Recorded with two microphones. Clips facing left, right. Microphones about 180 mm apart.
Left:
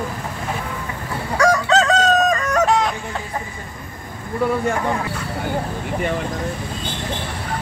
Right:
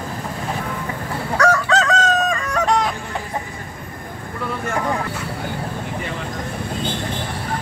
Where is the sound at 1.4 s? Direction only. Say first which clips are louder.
Left 1 dB; 15° left (ahead or behind).